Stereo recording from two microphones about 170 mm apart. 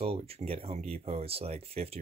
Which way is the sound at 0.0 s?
35° right (ahead or behind).